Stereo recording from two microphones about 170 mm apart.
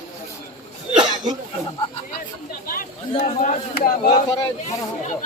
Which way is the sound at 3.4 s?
55° left (ahead or behind).